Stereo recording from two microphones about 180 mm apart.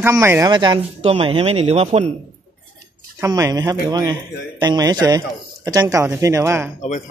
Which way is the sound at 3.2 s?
20° right (ahead or behind).